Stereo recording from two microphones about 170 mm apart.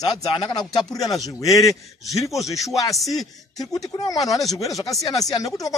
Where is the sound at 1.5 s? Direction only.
Centre (ahead or behind).